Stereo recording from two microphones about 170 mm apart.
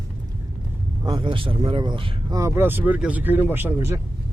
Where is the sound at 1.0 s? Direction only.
30° right (ahead or behind).